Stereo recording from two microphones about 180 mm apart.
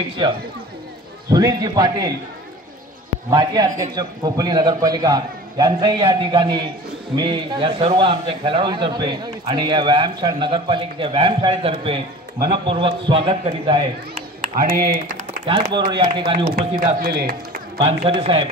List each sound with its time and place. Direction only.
0.2 s a man's voice: 25° right (ahead or behind)
3.3 s a man's voice: 20° right (ahead or behind)
14.1 s a sound: 55° right (ahead or behind)
15.4 s a man's voice: 25° right (ahead or behind)
16.4 s a man's voice: 55° right (ahead or behind)
17.7 s a man's voice: 30° right (ahead or behind)